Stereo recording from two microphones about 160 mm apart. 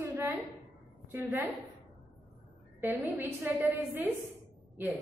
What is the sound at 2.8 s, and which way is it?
A woman's voice, 10° right (ahead or behind).